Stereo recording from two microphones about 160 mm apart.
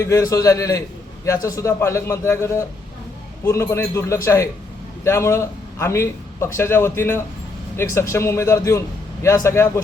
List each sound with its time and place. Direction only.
0.0 s a man's voice: 20° left (ahead or behind)